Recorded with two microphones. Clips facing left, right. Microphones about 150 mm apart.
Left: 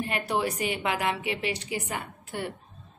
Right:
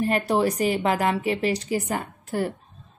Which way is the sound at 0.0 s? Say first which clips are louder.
Right 6 dB; 40° right (ahead or behind).